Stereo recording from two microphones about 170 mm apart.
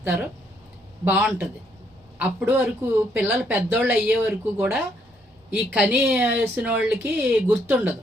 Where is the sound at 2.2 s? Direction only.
10° right (ahead or behind).